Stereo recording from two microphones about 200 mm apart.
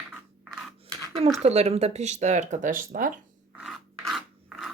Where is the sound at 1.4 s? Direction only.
30° right (ahead or behind).